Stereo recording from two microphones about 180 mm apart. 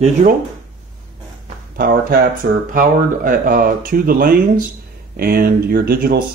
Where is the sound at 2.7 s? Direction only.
50° right (ahead or behind).